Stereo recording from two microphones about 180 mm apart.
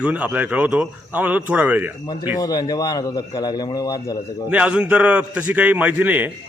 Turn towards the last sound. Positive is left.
turn(degrees=-10)  # may be behind; listen again after turning